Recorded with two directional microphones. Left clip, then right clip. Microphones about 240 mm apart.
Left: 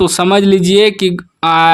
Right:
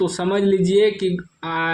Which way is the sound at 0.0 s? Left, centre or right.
Left.